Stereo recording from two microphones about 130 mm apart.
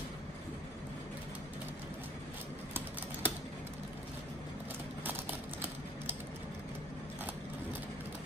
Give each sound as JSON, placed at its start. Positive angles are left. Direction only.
{"t": 2.7, "sound": "typing", "side_deg": -15}